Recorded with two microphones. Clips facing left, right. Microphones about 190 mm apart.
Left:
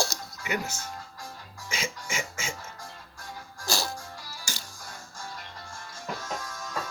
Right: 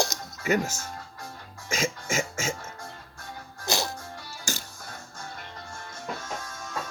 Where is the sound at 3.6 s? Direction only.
20° right (ahead or behind).